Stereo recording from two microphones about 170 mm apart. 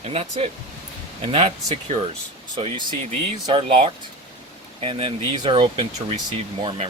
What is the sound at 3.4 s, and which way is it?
Speech, 30° right (ahead or behind).